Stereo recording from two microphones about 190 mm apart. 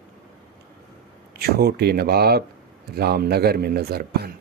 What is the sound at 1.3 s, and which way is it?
A man's voice, 55° right (ahead or behind).